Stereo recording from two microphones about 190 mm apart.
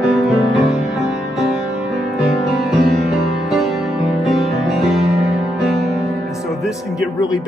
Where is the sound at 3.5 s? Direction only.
Centre (ahead or behind).